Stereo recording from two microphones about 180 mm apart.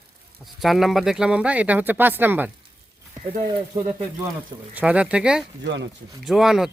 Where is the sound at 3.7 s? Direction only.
20° right (ahead or behind).